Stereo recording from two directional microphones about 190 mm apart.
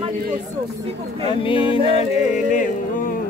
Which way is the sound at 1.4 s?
25° left (ahead or behind).